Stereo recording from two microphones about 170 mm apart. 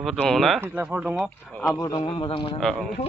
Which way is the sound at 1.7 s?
20° left (ahead or behind).